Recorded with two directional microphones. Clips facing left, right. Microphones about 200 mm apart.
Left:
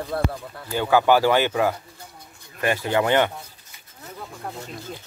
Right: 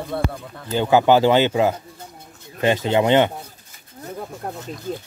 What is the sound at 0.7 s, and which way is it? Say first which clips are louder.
Speech: right 3 dB; 20° right (ahead or behind).